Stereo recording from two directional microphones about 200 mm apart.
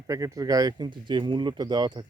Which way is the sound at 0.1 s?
15° right (ahead or behind).